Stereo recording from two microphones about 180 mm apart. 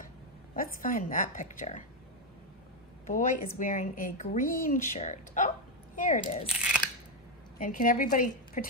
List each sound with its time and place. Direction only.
0.6 s a woman's voice: 50° left (ahead or behind)
3.1 s a woman's voice: 45° left (ahead or behind)
6.4 s crunch: 5° right (ahead or behind)
7.5 s a woman's voice: 50° left (ahead or behind)